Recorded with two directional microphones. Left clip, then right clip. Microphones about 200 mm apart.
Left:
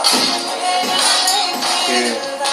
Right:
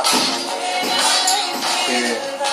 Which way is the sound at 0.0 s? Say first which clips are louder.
Left 2 dB; 15° left (ahead or behind).